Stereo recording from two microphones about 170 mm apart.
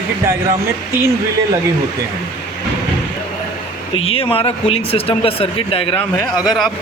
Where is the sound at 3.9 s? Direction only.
35° left (ahead or behind).